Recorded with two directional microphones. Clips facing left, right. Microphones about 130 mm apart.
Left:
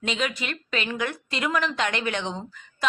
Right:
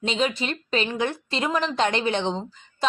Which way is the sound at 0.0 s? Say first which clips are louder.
Right 4 dB; 30° right (ahead or behind).